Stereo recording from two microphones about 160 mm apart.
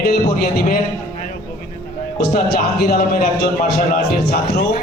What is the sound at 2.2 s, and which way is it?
A man's voice, 80° left.